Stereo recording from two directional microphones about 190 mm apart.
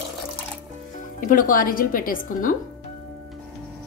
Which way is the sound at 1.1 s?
45° left (ahead or behind).